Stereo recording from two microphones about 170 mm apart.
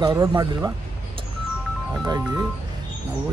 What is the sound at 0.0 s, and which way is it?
Speech, 25° right (ahead or behind).